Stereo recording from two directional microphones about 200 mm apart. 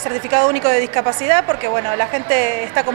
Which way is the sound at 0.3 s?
20° right (ahead or behind).